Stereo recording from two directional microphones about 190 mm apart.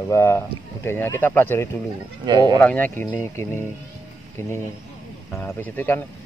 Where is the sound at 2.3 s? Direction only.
20° right (ahead or behind).